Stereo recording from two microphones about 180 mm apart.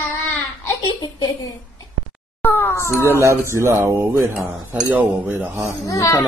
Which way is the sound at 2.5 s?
10° left (ahead or behind).